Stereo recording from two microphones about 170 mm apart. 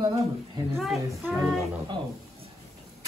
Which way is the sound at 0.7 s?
Centre (ahead or behind).